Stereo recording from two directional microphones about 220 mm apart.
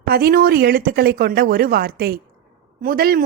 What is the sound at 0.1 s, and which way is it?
Speech, 45° right (ahead or behind).